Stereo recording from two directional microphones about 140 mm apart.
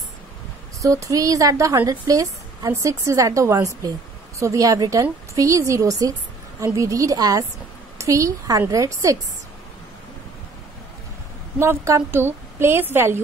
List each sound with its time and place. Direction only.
0.8 s a woman's voice: 25° right (ahead or behind)
11.6 s a woman's voice: 20° right (ahead or behind)